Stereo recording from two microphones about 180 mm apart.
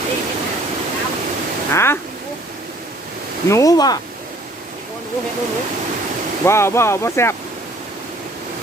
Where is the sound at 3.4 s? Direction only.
20° left (ahead or behind).